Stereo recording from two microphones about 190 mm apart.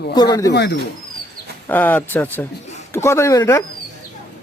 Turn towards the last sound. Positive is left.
turn(degrees=15)  # may be behind; listen again after turning